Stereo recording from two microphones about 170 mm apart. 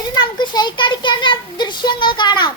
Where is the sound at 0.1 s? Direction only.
25° left (ahead or behind).